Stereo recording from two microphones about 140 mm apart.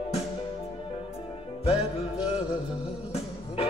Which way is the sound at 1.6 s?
45° left (ahead or behind).